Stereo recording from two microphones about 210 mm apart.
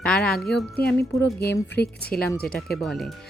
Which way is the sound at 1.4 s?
50° left (ahead or behind).